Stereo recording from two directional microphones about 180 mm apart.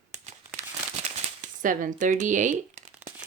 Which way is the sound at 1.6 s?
45° right (ahead or behind).